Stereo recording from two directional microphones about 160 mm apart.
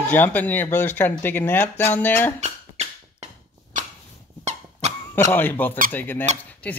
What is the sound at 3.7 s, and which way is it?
Dog, 55° right (ahead or behind).